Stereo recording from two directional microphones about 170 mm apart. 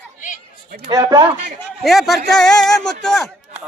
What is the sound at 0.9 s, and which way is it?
Speech, 25° right (ahead or behind).